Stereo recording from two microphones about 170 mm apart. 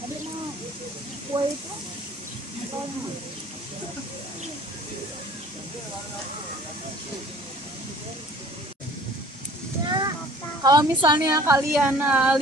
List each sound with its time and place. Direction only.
1.3 s speech: 30° right (ahead or behind)
9.8 s a sound: 25° right (ahead or behind)
10.6 s a woman's voice: 25° right (ahead or behind); by 12.4 s 5° right (ahead or behind)